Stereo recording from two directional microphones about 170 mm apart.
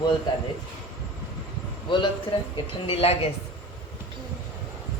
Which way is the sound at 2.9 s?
35° left (ahead or behind).